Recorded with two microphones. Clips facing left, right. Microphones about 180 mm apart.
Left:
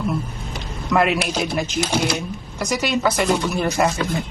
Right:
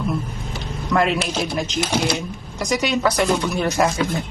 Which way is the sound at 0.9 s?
5° left (ahead or behind).